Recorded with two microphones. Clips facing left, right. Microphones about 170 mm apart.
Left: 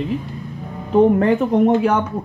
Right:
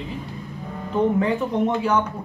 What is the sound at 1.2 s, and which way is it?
Speech, 55° left (ahead or behind).